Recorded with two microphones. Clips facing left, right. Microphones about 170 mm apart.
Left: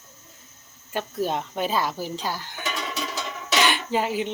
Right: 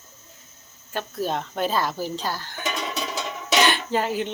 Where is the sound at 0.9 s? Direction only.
15° left (ahead or behind).